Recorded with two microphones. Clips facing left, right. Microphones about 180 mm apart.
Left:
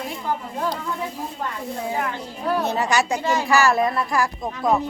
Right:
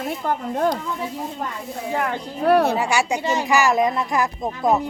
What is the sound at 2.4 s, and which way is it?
Speech, 65° right (ahead or behind).